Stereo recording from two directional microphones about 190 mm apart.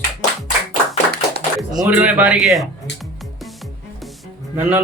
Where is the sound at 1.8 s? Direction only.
5° right (ahead or behind).